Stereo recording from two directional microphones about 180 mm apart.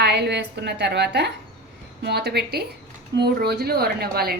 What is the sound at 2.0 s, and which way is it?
Dishes, 65° right (ahead or behind).